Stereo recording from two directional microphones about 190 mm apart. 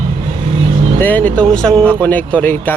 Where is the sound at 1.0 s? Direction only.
10° left (ahead or behind).